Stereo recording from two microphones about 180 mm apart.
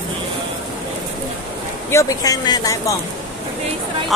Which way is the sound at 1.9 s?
15° left (ahead or behind).